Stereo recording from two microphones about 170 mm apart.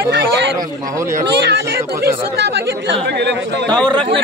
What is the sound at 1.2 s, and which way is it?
Speech, 90° right.